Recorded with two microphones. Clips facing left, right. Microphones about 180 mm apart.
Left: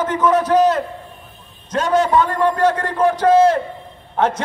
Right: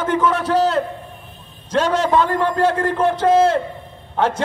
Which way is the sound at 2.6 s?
25° right (ahead or behind).